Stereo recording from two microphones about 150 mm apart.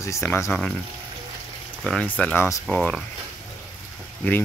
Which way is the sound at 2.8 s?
5° left (ahead or behind).